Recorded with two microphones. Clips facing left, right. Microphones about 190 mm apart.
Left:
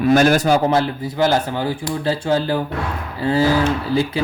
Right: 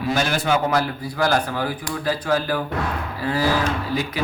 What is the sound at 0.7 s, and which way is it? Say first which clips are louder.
Speech: left 4 dB; 25° left (ahead or behind).